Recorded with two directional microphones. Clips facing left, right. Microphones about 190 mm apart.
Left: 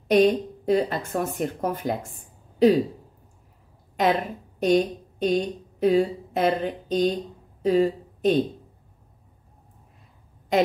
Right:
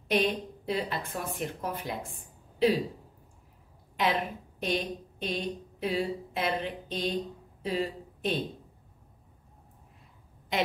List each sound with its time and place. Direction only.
0.1 s a woman's voice: 45° left (ahead or behind)
3.9 s a woman's voice: 45° left (ahead or behind)